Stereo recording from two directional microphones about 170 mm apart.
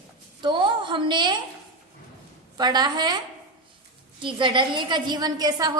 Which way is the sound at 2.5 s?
25° right (ahead or behind).